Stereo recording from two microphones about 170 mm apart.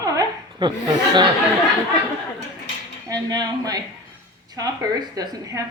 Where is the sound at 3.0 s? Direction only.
25° right (ahead or behind).